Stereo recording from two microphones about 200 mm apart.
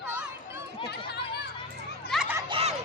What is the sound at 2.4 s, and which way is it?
Children playing, 25° right (ahead or behind).